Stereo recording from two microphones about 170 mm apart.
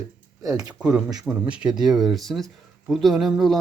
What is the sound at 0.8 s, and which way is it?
Speech, 5° right (ahead or behind).